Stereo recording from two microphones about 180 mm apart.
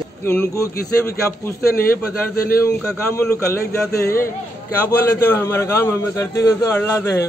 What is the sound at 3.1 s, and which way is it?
Speech, 15° left (ahead or behind).